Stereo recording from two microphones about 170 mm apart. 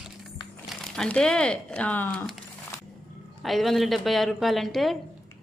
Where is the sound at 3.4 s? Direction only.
Centre (ahead or behind).